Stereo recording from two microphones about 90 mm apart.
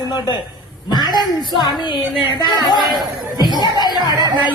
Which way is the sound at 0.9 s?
55° left (ahead or behind).